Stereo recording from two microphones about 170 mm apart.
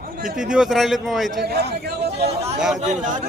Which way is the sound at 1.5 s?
70° right (ahead or behind).